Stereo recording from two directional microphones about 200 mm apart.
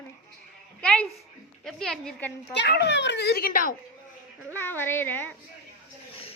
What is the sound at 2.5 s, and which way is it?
Speech, 55° left (ahead or behind).